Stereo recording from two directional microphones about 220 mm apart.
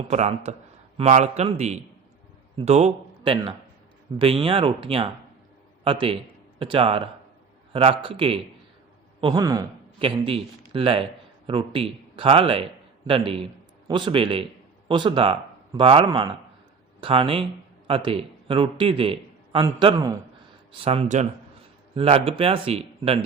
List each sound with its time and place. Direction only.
0.1 s a man's voice: 30° right (ahead or behind)